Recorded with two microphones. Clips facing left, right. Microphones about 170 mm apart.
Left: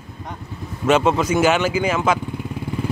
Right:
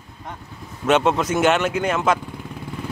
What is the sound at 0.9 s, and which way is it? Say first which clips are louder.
Speech: left 1 dB; centre (ahead or behind).